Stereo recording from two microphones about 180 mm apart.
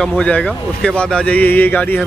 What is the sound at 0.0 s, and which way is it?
Speech, 5° left (ahead or behind).